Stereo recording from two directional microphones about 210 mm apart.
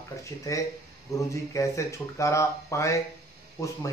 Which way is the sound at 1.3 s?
15° left (ahead or behind).